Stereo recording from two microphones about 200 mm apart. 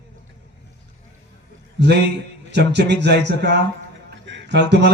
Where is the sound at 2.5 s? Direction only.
60° right (ahead or behind).